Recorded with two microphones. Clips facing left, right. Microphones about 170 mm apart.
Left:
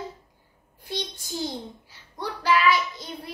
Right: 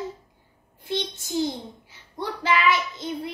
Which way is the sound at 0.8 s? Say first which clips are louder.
Right 4 dB; 20° right (ahead or behind).